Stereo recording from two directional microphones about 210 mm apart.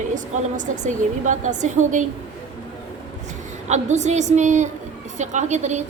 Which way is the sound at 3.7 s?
35° right (ahead or behind).